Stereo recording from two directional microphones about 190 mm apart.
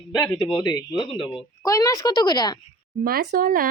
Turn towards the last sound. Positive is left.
turn(degrees=-50)  # may be behind; listen again after turning